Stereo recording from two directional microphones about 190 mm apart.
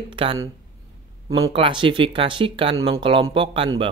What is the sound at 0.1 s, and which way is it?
Speech, 25° right (ahead or behind).